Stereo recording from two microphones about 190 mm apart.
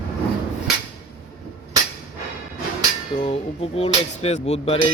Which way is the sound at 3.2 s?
30° left (ahead or behind).